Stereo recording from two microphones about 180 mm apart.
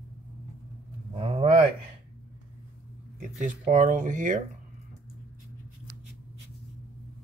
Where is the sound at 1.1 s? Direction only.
30° right (ahead or behind).